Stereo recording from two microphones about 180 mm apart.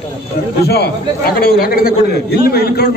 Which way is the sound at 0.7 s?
60° left (ahead or behind).